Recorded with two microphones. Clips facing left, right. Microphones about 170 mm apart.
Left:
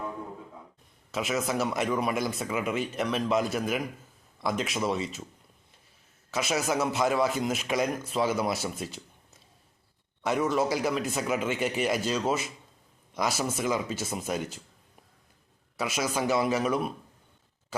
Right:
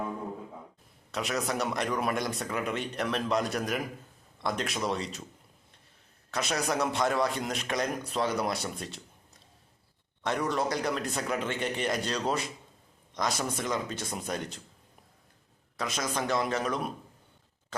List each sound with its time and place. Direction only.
1.1 s a man's voice: centre (ahead or behind)
6.3 s a man's voice: 5° left (ahead or behind)
15.8 s speech: 10° left (ahead or behind)